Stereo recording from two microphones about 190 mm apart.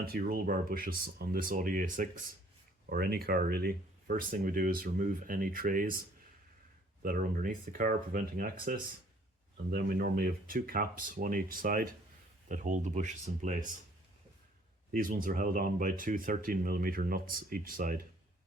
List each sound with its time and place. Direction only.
0.0 s speech: 50° right (ahead or behind)
14.9 s speech: 45° right (ahead or behind)